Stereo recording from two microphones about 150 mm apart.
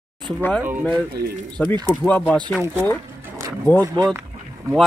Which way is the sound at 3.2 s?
20° right (ahead or behind).